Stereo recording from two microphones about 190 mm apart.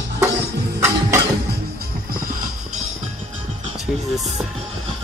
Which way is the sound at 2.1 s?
45° right (ahead or behind).